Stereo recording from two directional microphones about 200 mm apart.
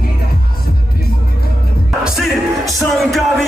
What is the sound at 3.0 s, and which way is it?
Music, centre (ahead or behind).